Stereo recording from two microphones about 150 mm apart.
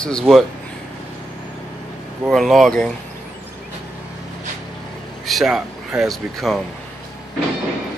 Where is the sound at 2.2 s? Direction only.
Centre (ahead or behind).